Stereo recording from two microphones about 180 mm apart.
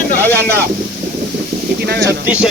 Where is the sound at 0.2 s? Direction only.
10° left (ahead or behind).